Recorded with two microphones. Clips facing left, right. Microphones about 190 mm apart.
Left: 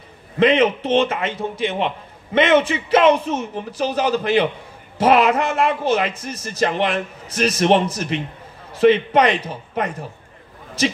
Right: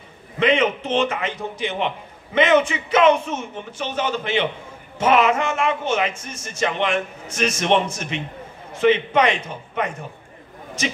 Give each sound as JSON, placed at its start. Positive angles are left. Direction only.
{"t": 0.4, "sound": "a man's voice", "side_deg": 30}